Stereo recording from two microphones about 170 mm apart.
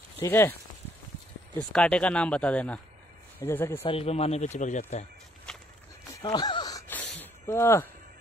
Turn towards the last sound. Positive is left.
turn(degrees=15)  # may be behind; listen again after turning